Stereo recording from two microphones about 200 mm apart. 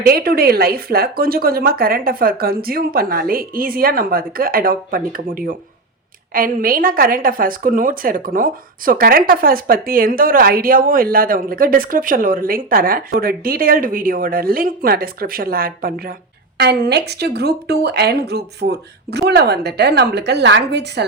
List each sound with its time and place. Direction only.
0.0 s a woman's voice: 50° right (ahead or behind)